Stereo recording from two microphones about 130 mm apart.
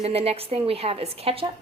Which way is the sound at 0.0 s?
50° right (ahead or behind).